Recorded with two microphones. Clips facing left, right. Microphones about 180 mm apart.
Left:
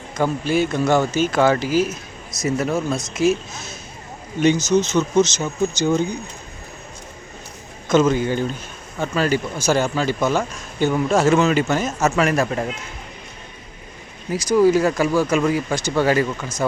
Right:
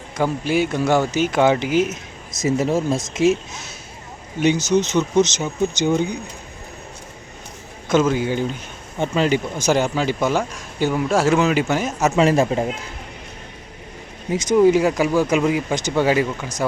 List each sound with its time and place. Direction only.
0.2 s speech: 15° right (ahead or behind)
7.9 s speech: 10° right (ahead or behind)
12.2 s speech: 25° right (ahead or behind)
14.3 s speech: 25° right (ahead or behind)